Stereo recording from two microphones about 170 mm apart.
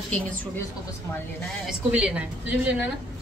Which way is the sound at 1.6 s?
5° right (ahead or behind).